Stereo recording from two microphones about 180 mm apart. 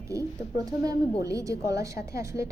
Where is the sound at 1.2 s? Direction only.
20° right (ahead or behind).